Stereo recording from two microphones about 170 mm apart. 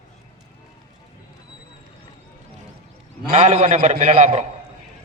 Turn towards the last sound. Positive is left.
turn(degrees=-45)  # may be behind; listen again after turning